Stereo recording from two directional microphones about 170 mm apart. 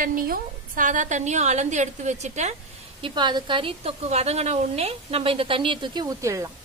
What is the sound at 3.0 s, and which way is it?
A woman's voice, 25° right (ahead or behind).